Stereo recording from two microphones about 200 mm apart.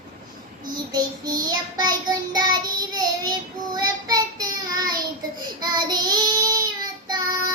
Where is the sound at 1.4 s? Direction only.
20° right (ahead or behind).